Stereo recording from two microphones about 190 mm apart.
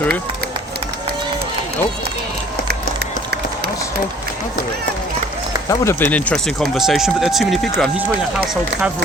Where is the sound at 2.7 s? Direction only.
55° right (ahead or behind).